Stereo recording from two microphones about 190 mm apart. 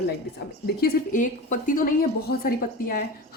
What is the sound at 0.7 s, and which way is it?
Speech, 45° left (ahead or behind).